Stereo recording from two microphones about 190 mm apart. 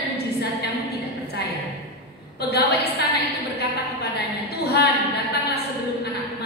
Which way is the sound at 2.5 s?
60° left (ahead or behind).